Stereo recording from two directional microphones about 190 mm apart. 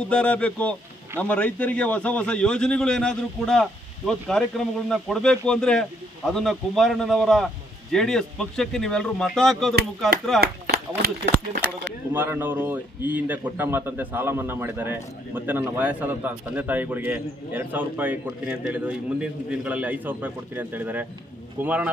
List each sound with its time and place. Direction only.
0.0 s a man's voice: 5° left (ahead or behind)
9.8 s speech: 50° right (ahead or behind)
11.0 s speech: 65° right (ahead or behind)
12.1 s a man's voice: 10° right (ahead or behind)